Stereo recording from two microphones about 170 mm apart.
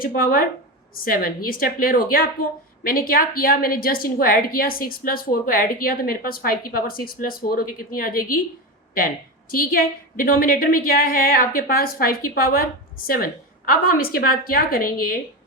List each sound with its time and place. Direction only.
0.0 s a woman's voice: 60° left (ahead or behind)
9.5 s a woman's voice: 55° left (ahead or behind)